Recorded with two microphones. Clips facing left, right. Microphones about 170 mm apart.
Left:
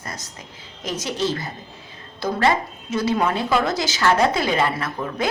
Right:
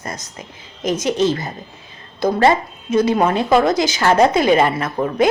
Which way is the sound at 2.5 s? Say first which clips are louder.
Right 5 dB; 20° right (ahead or behind).